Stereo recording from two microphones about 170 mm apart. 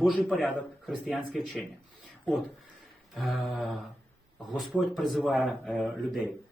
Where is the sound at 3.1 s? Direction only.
Centre (ahead or behind).